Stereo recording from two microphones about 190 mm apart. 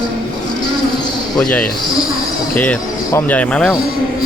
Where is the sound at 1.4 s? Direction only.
5° left (ahead or behind).